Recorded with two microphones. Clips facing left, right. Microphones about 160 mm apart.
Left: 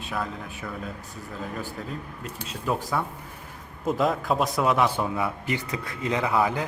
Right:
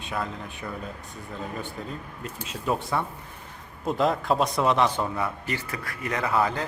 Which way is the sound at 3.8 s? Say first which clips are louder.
Even; centre (ahead or behind).